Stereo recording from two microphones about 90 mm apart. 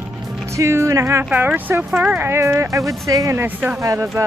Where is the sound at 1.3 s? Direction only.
20° right (ahead or behind); by 3.4 s 40° right (ahead or behind).